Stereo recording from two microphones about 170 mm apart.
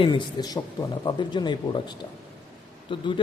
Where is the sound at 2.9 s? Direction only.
30° left (ahead or behind).